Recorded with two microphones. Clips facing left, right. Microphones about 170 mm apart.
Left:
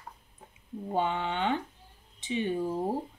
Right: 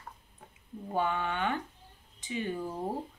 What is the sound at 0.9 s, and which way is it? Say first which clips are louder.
A woman's voice: left 1 dB; 20° left (ahead or behind).